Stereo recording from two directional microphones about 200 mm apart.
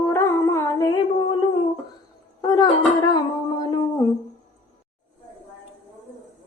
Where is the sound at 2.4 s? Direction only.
20° left (ahead or behind).